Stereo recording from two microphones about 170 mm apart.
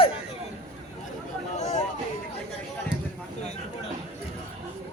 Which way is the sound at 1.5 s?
45° left (ahead or behind).